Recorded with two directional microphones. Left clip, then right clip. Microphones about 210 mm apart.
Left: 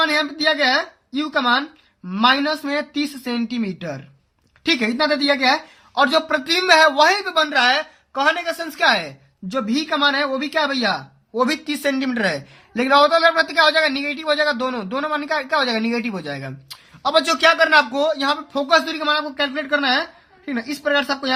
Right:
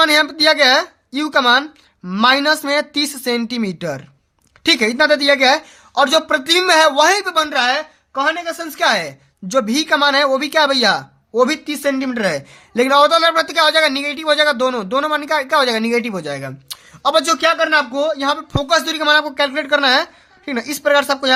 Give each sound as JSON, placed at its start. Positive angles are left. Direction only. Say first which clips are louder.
{"t": 0.0, "sound": "a man's voice", "louder": "right 6 dB", "side_deg": -40}
{"t": 8.1, "sound": "a man's voice", "louder": "right 1 dB", "side_deg": -10}
{"t": 11.4, "sound": "a man's voice", "louder": "right 3 dB", "side_deg": -20}
{"t": 18.5, "sound": "a man's voice", "louder": "left 1 dB", "side_deg": -35}